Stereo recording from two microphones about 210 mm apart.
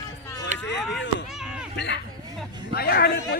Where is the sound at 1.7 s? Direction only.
55° left (ahead or behind).